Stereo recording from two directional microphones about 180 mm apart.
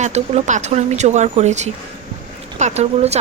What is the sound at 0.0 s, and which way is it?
Speech, 40° right (ahead or behind).